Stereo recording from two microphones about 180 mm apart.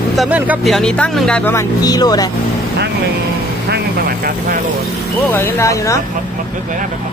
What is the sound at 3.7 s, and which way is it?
Vehicle, 55° right (ahead or behind).